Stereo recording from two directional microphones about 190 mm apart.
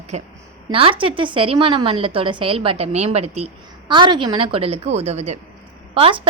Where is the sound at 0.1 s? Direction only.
35° right (ahead or behind).